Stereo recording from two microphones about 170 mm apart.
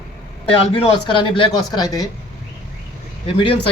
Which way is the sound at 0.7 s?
30° left (ahead or behind).